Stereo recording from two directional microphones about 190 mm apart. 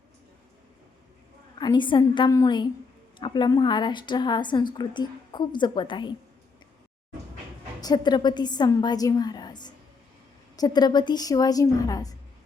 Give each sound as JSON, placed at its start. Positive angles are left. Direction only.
{"t": 1.5, "sound": "a woman's voice", "side_deg": 25}
{"t": 7.8, "sound": "a woman's voice", "side_deg": 20}